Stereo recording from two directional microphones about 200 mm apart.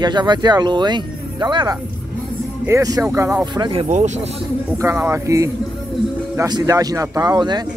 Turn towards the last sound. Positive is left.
turn(degrees=-20)  # may be behind; listen again after turning